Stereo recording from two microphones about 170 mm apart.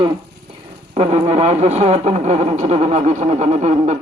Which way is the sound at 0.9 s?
40° right (ahead or behind).